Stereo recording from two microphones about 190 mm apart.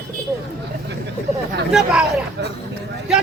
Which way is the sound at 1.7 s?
5° right (ahead or behind).